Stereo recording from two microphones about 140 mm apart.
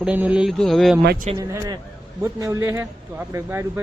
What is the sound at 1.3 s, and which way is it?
Speech, 25° right (ahead or behind).